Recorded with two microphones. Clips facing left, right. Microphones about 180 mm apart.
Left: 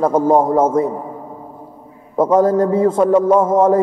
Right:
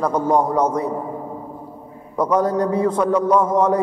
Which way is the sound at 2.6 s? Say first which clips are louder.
Left 5 dB; 25° left (ahead or behind).